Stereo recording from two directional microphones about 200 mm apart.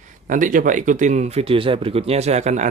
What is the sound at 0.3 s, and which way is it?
Speech, 40° right (ahead or behind).